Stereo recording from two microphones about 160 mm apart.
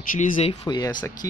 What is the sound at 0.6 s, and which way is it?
Speech, 25° left (ahead or behind).